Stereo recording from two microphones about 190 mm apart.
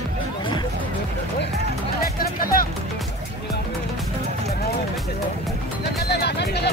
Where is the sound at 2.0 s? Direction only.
50° left (ahead or behind).